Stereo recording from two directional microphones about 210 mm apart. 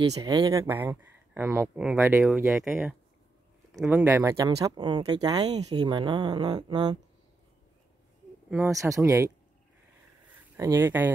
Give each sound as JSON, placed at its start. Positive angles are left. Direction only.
{"t": 0.1, "sound": "speech", "side_deg": -15}
{"t": 8.5, "sound": "speech", "side_deg": -10}
{"t": 10.5, "sound": "speech", "side_deg": -10}